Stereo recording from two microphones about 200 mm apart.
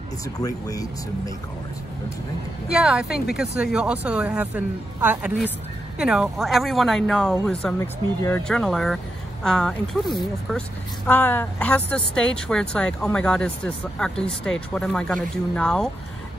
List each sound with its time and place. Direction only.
0.4 s speech: 20° left (ahead or behind)
2.7 s speech: 5° right (ahead or behind)